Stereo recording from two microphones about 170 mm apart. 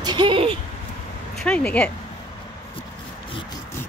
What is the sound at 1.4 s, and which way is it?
Speech, 5° left (ahead or behind).